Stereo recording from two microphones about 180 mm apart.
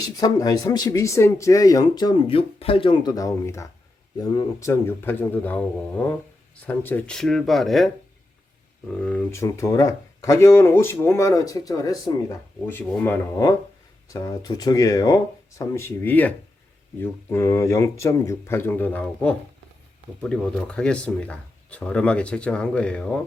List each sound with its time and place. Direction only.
0.0 s speech: 20° left (ahead or behind)
6.7 s speech: 10° left (ahead or behind)
8.9 s speech: 5° left (ahead or behind); by 12.1 s 20° left (ahead or behind)
12.6 s speech: 10° left (ahead or behind)